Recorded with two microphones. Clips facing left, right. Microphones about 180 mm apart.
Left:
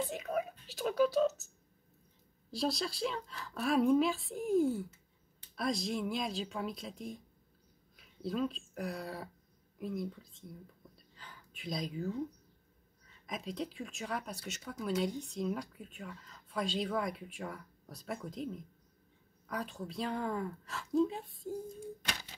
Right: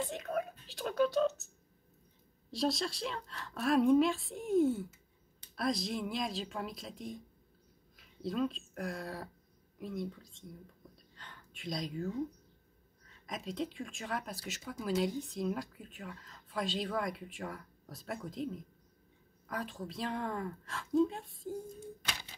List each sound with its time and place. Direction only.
0.0 s speech: centre (ahead or behind)
2.5 s speech: centre (ahead or behind)